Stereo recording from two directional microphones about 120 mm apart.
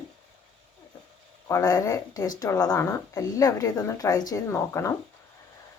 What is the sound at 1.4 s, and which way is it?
A woman's voice, 30° left (ahead or behind).